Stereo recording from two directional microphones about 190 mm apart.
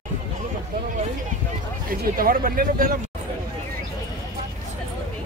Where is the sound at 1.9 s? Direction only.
50° right (ahead or behind).